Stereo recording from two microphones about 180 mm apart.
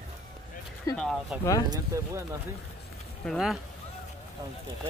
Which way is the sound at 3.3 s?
Centre (ahead or behind).